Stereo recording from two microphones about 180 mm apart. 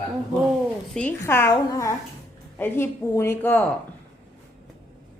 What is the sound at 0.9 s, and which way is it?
A woman's voice, 10° left (ahead or behind).